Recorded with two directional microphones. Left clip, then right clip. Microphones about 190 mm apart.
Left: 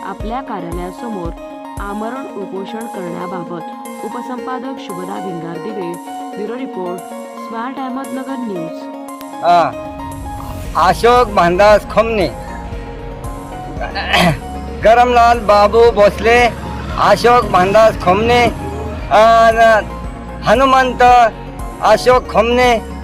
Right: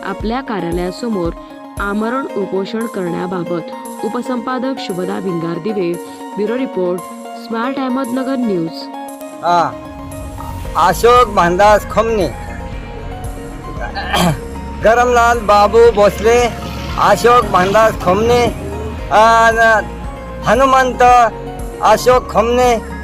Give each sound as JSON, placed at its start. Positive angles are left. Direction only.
{"t": 0.0, "sound": "speech", "side_deg": -30}
{"t": 1.8, "sound": "speech", "side_deg": -30}
{"t": 9.4, "sound": "speech", "side_deg": -5}
{"t": 10.8, "sound": "speech", "side_deg": 0}
{"t": 13.8, "sound": "speech", "side_deg": 0}